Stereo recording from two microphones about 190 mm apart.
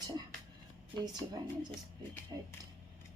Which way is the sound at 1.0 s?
20° right (ahead or behind).